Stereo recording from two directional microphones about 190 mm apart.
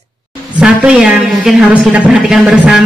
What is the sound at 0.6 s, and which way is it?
A woman's voice, 5° right (ahead or behind).